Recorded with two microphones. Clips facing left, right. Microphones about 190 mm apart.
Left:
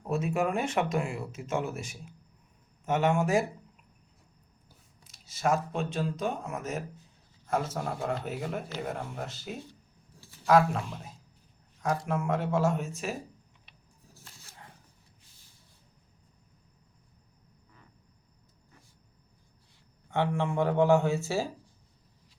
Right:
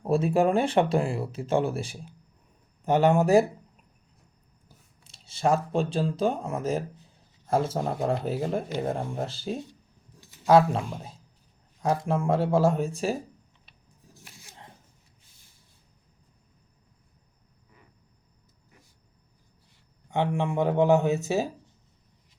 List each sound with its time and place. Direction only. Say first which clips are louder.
0.0 s speech: right 6 dB; 30° right (ahead or behind)
5.0 s a man's voice: right 4 dB; 30° right (ahead or behind)
10.1 s a sound: right 2 dB; 20° right (ahead or behind)
10.4 s speech: right 4 dB; 30° right (ahead or behind)
14.1 s a sound: right 4 dB; 15° right (ahead or behind)
20.1 s speech: right 2 dB; 15° right (ahead or behind)